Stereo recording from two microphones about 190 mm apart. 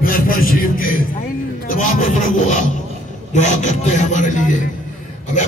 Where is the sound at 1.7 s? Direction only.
45° left (ahead or behind).